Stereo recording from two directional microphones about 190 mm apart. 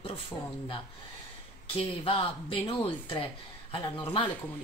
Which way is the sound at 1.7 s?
30° left (ahead or behind).